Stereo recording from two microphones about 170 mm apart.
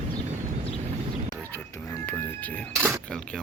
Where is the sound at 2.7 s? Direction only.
15° right (ahead or behind).